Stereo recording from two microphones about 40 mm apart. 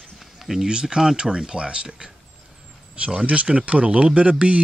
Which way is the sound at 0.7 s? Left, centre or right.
Centre.